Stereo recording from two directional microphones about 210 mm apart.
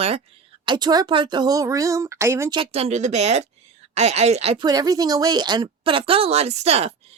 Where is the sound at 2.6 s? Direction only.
30° right (ahead or behind).